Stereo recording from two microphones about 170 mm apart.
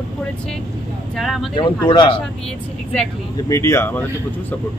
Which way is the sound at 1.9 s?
30° left (ahead or behind).